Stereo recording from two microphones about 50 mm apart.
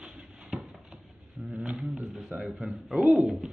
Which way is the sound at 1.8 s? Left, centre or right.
Centre.